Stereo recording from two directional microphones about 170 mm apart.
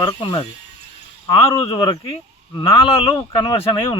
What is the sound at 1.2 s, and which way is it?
Speech, 20° left (ahead or behind).